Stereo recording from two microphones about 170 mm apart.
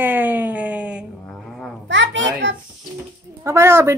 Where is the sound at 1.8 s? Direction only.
90° right.